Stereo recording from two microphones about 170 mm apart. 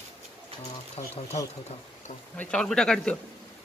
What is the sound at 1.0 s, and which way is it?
Speech, 45° left (ahead or behind).